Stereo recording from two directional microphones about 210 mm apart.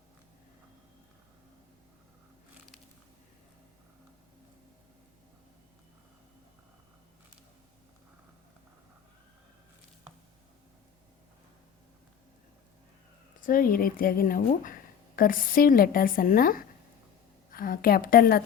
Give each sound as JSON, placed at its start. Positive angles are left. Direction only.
{"t": 13.4, "sound": "a woman's voice", "side_deg": 40}